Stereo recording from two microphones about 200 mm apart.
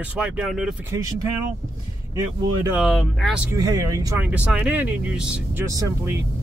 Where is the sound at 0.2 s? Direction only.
5° right (ahead or behind).